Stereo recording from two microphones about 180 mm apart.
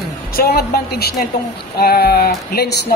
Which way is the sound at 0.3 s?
60° left (ahead or behind).